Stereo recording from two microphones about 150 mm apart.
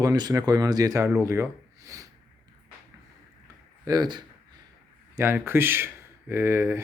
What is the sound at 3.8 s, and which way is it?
Speech, 25° right (ahead or behind).